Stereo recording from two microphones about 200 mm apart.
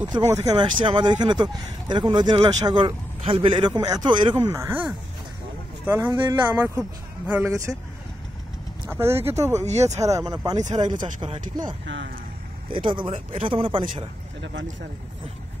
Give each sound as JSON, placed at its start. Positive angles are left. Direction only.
{"t": 0.1, "sound": "speech", "side_deg": -15}
{"t": 5.9, "sound": "speech", "side_deg": -10}
{"t": 6.1, "sound": "speech", "side_deg": -25}
{"t": 6.6, "sound": "speech", "side_deg": -10}
{"t": 8.8, "sound": "speech", "side_deg": -10}
{"t": 9.7, "sound": "speech", "side_deg": -35}
{"t": 9.9, "sound": "speech", "side_deg": -15}
{"t": 10.6, "sound": "speech", "side_deg": -35}
{"t": 11.1, "sound": "speech", "side_deg": -25}
{"t": 11.8, "sound": "speech", "side_deg": -60}
{"t": 12.6, "sound": "speech", "side_deg": -25}
{"t": 14.4, "sound": "speech", "side_deg": -65}